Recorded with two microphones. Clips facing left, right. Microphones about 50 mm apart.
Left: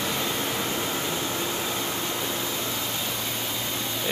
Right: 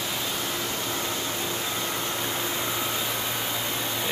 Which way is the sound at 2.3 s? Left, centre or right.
Centre.